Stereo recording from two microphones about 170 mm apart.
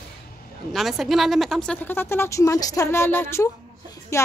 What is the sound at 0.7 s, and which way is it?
A woman's voice, centre (ahead or behind).